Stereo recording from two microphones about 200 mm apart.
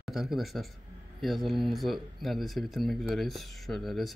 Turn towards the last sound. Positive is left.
turn(degrees=0)  # may be behind; listen again after turning